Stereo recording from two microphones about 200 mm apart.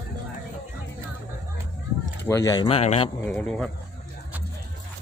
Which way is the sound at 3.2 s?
10° left (ahead or behind).